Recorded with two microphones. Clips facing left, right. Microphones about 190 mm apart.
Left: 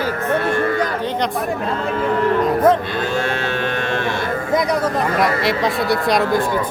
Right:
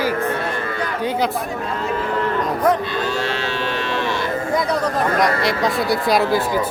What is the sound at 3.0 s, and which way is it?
Cattle, 50° left (ahead or behind).